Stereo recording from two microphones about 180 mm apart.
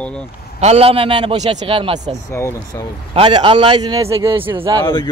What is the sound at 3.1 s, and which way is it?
A man's voice, 30° right (ahead or behind).